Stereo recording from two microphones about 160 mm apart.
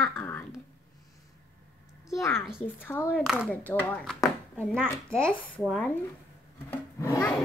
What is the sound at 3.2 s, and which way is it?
Speech, centre (ahead or behind).